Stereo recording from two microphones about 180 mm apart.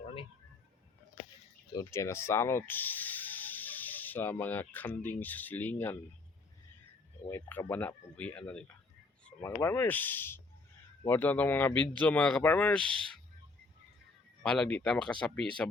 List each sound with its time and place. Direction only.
0.0 s a sound: 30° left (ahead or behind)
1.7 s speech: 15° left (ahead or behind)
7.3 s speech: 10° left (ahead or behind)
14.4 s speech: 5° left (ahead or behind)